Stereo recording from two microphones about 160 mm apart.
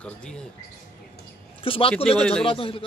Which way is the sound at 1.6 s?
35° left (ahead or behind).